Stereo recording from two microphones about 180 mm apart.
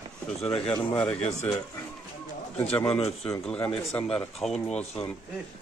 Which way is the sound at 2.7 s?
5° left (ahead or behind).